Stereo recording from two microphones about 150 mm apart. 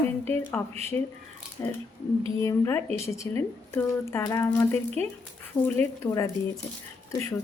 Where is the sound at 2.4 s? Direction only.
20° left (ahead or behind).